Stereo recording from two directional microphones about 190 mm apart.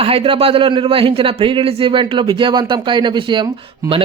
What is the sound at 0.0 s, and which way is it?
A man's voice, 30° right (ahead or behind).